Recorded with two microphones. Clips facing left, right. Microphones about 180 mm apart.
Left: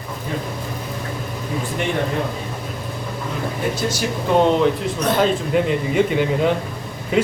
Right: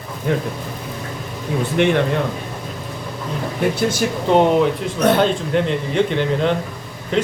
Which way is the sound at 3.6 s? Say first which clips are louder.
Right 5 dB; 65° right (ahead or behind).